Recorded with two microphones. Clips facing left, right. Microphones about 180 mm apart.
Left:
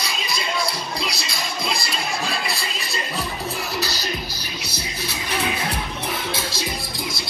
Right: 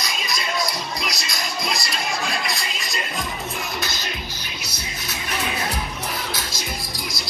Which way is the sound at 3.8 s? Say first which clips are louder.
Left 3 dB; 35° left (ahead or behind).